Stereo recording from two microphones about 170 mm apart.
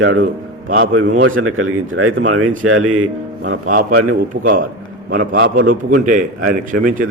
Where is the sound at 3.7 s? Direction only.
50° right (ahead or behind).